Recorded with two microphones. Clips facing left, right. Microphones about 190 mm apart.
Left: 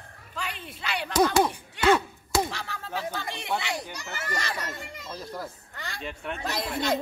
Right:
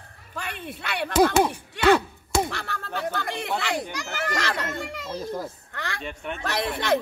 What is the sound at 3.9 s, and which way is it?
A child's voice, 85° right.